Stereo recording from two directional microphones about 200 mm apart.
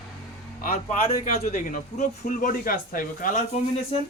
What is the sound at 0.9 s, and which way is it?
Speech, 30° left (ahead or behind).